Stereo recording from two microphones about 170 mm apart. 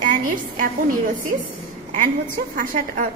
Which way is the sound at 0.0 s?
50° right (ahead or behind).